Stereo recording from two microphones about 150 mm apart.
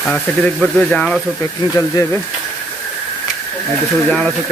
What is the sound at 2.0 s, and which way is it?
Speech, 25° left (ahead or behind).